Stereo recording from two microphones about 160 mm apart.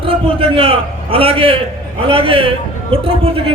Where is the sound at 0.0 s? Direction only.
35° right (ahead or behind).